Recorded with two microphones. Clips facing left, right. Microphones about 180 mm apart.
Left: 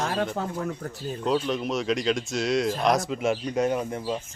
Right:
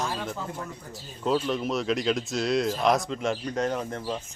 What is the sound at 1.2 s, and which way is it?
Speech, centre (ahead or behind).